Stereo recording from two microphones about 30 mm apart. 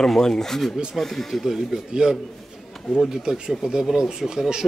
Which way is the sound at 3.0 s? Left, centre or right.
Centre.